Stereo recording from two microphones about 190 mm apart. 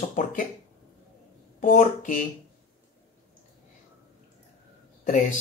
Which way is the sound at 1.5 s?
40° left (ahead or behind).